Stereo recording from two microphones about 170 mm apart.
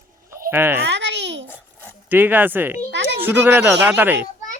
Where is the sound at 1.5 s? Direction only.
10° left (ahead or behind).